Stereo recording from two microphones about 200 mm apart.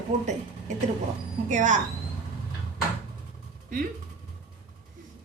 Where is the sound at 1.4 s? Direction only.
40° right (ahead or behind).